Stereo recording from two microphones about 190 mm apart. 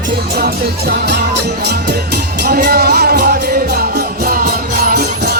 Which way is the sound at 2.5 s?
55° right (ahead or behind).